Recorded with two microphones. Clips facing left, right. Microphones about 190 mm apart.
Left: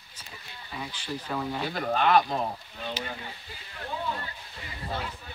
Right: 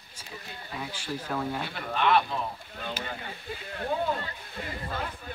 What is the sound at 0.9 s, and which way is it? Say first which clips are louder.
Speech: even; 10° right (ahead or behind).